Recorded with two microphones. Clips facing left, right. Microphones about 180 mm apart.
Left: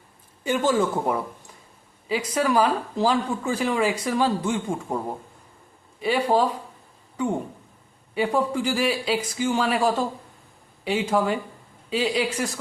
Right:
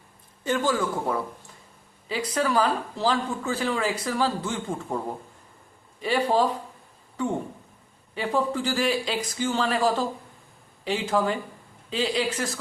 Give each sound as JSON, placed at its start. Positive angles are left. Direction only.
{"t": 0.4, "sound": "speech", "side_deg": 20}
{"t": 2.0, "sound": "speech", "side_deg": 10}
{"t": 6.0, "sound": "speech", "side_deg": 10}
{"t": 8.1, "sound": "speech", "side_deg": 10}